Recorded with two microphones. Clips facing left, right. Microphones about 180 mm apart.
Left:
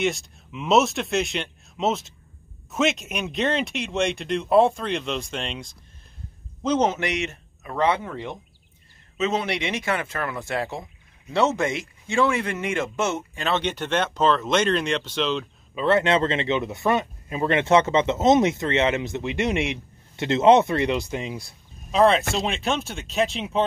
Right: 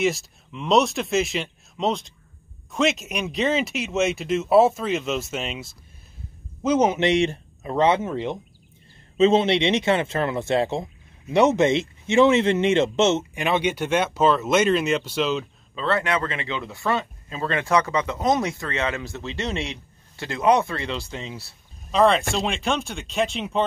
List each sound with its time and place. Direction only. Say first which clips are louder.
0.0 s a man's voice: right 2 dB; centre (ahead or behind)
7.0 s speech: right 7 dB; 30° right (ahead or behind); by 15.4 s 5° right (ahead or behind)
15.7 s speech: left 4 dB; 20° left (ahead or behind)
21.5 s speech: even; centre (ahead or behind)